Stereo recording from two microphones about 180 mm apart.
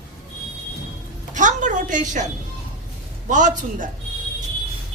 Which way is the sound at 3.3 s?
45° right (ahead or behind).